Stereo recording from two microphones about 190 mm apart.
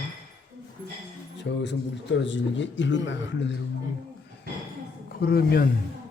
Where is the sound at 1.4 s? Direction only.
70° left (ahead or behind).